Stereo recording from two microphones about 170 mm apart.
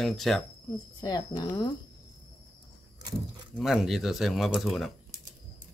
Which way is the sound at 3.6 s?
Centre (ahead or behind).